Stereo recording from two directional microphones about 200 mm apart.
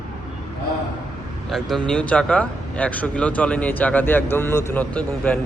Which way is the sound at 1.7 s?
5° left (ahead or behind).